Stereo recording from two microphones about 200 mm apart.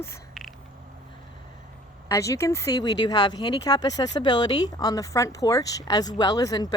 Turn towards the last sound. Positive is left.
turn(degrees=20)  # may be behind; listen again after turning